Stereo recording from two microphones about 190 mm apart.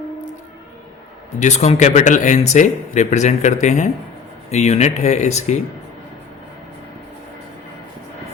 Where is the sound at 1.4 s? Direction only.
35° left (ahead or behind).